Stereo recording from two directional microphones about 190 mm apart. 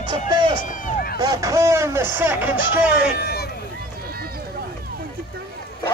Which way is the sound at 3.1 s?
55° left (ahead or behind).